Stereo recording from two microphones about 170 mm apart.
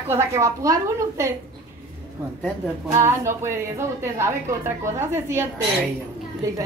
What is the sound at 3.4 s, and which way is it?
A woman's voice, 15° right (ahead or behind).